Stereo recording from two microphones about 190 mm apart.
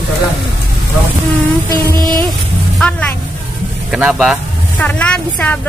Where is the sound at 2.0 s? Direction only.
20° right (ahead or behind).